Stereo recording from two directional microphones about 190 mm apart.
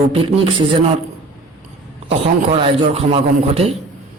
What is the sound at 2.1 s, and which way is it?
A man's voice, 30° right (ahead or behind).